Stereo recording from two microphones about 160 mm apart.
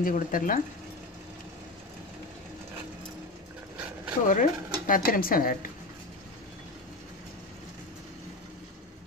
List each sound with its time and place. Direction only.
0.0 s speech: 60° left (ahead or behind)
3.7 s a sound: 5° right (ahead or behind)
4.3 s speech: 55° left (ahead or behind)